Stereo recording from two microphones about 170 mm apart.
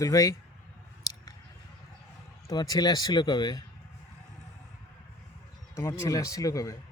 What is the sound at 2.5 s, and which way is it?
Speech, 20° left (ahead or behind).